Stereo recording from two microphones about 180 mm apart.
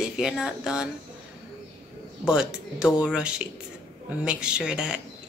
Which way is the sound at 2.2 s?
5° right (ahead or behind).